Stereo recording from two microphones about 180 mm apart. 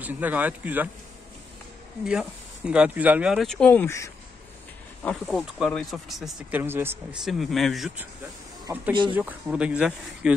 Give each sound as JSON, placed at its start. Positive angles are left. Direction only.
{"t": 0.0, "sound": "speech", "side_deg": -10}
{"t": 2.0, "sound": "speech", "side_deg": -5}
{"t": 5.0, "sound": "speech", "side_deg": 5}
{"t": 6.6, "sound": "speech", "side_deg": -10}
{"t": 7.2, "sound": "speech", "side_deg": 0}
{"t": 8.7, "sound": "speech", "side_deg": -15}